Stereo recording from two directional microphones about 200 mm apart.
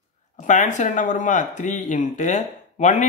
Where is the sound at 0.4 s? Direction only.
40° left (ahead or behind).